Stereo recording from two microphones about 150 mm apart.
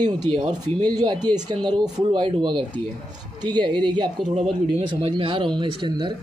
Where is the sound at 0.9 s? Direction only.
25° right (ahead or behind).